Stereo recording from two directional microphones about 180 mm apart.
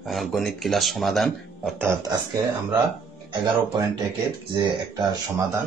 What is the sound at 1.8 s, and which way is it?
Speech, 15° right (ahead or behind).